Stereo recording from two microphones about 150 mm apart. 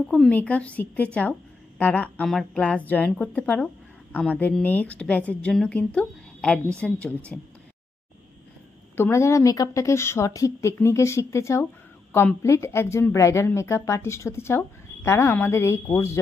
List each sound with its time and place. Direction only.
0.1 s a woman's voice: 10° left (ahead or behind)
8.9 s a woman's voice: 15° left (ahead or behind)